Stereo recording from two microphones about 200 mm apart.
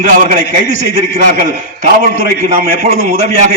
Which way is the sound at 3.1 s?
40° right (ahead or behind).